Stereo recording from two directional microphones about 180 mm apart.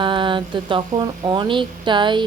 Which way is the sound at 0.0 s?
25° right (ahead or behind).